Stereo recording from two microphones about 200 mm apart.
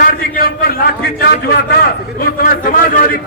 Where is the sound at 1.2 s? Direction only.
50° left (ahead or behind).